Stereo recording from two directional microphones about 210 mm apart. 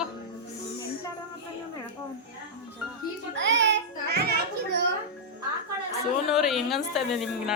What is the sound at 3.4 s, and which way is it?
Music, 60° right (ahead or behind).